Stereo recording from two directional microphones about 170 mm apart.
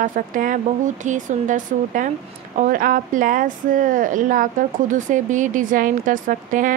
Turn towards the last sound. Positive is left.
turn(degrees=-50)  # may be behind; listen again after turning